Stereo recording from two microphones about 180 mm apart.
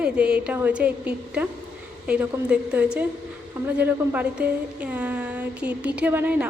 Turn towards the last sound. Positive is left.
turn(degrees=-10)  # may be behind; listen again after turning